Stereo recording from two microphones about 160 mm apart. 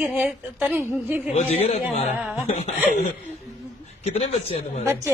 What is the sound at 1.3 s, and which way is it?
Speech, 40° left (ahead or behind).